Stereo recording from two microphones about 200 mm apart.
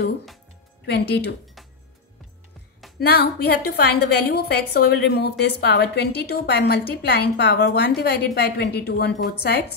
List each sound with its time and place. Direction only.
0.8 s speech: 55° left (ahead or behind)
3.0 s a woman's voice: 55° left (ahead or behind)